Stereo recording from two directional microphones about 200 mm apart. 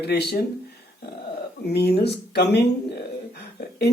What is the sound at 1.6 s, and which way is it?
Speech, 55° left (ahead or behind).